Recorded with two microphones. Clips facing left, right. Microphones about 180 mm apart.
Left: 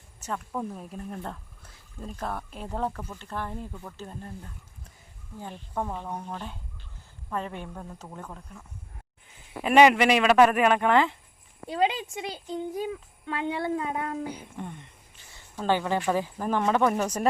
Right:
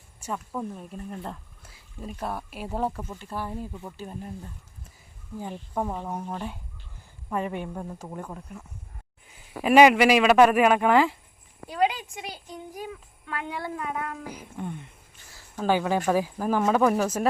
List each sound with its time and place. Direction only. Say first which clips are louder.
0.2 s speech: right 1 dB; 10° right (ahead or behind)
0.5 s speech: even; centre (ahead or behind)
5.4 s speech: right 3 dB; 10° right (ahead or behind)
9.6 s speech: right 2 dB; 5° right (ahead or behind)
11.7 s a woman's voice: right 1 dB; 25° left (ahead or behind)
14.5 s speech: right 3 dB; 5° right (ahead or behind)